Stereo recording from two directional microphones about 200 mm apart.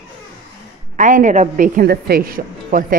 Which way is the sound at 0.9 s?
40° right (ahead or behind).